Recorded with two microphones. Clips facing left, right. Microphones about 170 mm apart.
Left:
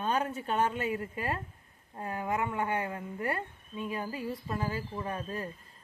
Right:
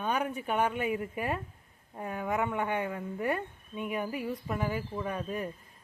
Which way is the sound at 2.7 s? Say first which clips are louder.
Right 1 dB; 20° right (ahead or behind).